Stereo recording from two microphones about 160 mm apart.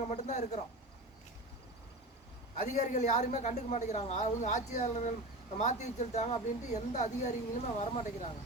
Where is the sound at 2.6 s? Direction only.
45° left (ahead or behind).